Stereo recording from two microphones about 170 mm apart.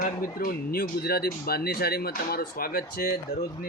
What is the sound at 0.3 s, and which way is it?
Speech, 60° left (ahead or behind).